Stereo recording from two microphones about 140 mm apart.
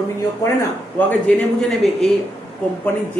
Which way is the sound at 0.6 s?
10° left (ahead or behind).